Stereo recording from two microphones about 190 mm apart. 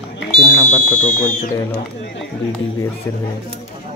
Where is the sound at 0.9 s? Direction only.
45° left (ahead or behind).